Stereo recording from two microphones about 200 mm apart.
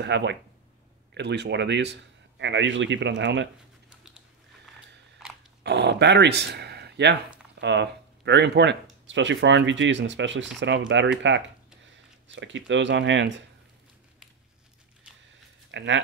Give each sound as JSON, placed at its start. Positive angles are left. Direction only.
{"t": 0.0, "sound": "a man's voice", "side_deg": -60}
{"t": 5.6, "sound": "a man's voice", "side_deg": -60}
{"t": 15.7, "sound": "speech", "side_deg": -65}